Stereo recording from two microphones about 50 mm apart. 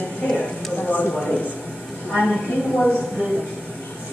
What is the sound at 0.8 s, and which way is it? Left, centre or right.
Speech, left.